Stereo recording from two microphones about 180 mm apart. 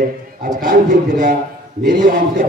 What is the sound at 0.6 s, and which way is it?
A man's voice, 50° right (ahead or behind).